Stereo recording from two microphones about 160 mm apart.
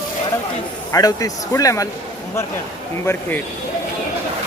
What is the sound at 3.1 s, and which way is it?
Speech, 15° left (ahead or behind).